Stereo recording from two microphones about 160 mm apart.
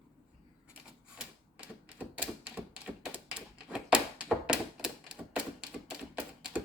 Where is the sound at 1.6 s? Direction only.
10° right (ahead or behind).